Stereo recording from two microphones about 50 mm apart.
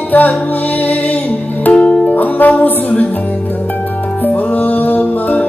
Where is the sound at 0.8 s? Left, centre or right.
Left.